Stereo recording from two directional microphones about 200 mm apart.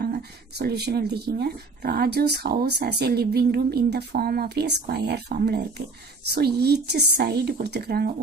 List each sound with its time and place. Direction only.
0.0 s speech: 50° right (ahead or behind)